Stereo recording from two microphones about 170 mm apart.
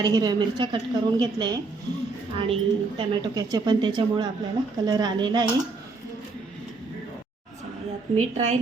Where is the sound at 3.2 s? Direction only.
25° right (ahead or behind).